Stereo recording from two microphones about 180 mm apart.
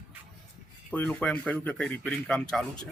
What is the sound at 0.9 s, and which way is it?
Speech, 5° left (ahead or behind).